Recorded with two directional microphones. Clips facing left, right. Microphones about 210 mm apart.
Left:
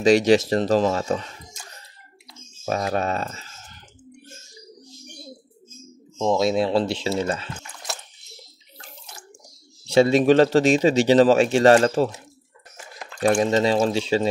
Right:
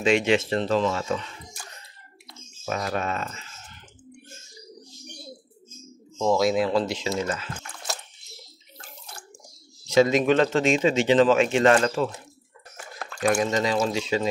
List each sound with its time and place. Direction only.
0.0 s a man's voice: 40° left (ahead or behind)
2.6 s speech: 35° left (ahead or behind)
6.1 s speech: 20° left (ahead or behind)
9.8 s a man's voice: 30° left (ahead or behind)
13.2 s a man's voice: 30° left (ahead or behind)